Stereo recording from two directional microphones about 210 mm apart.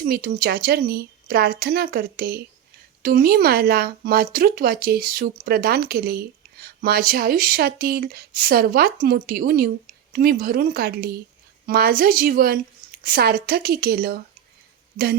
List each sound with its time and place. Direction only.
0.0 s speech: 45° right (ahead or behind)